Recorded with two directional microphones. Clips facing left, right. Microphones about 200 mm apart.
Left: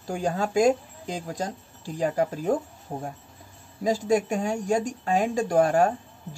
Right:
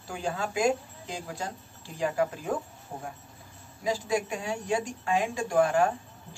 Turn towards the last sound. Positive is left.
turn(degrees=40)  # may be behind; listen again after turning